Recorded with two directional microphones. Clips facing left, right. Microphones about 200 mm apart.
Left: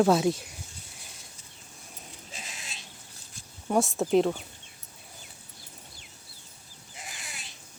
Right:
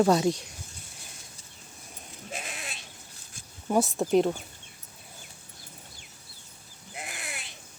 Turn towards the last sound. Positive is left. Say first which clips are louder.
# right 5 dB
turn(degrees=-60)  # may be behind; listen again after turning